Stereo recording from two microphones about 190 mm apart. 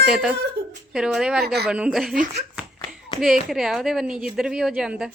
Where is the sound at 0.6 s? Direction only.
50° right (ahead or behind).